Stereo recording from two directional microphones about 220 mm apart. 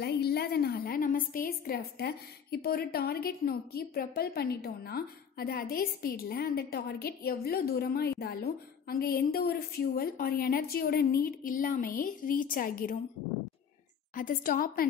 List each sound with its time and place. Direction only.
0.0 s a woman's voice: 45° left (ahead or behind)
14.1 s a woman's voice: 40° left (ahead or behind)